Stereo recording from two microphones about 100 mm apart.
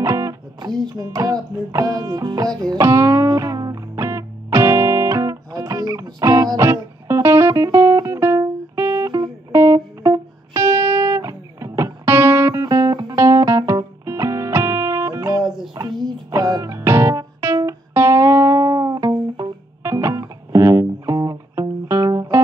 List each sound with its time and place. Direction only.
0.0 s music: 30° right (ahead or behind)
9.5 s music: 30° right (ahead or behind)
15.4 s child singing: 5° right (ahead or behind)
15.7 s music: 45° right (ahead or behind)